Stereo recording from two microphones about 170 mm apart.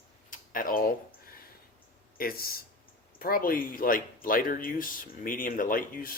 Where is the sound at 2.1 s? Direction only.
60° left (ahead or behind).